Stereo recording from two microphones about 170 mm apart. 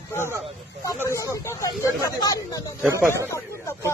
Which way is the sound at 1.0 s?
20° left (ahead or behind).